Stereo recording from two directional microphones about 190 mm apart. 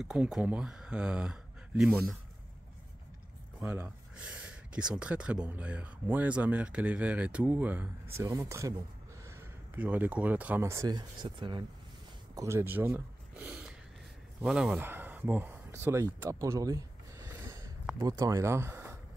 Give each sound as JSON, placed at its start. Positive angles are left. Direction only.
{"t": 0.0, "sound": "speech", "side_deg": -5}
{"t": 3.6, "sound": "speech", "side_deg": -15}
{"t": 12.4, "sound": "speech", "side_deg": -15}